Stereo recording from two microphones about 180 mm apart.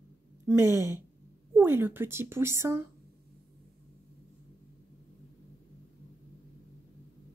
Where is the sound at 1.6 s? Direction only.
10° right (ahead or behind).